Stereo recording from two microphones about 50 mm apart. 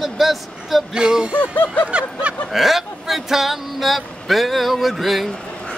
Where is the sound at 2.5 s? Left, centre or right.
Centre.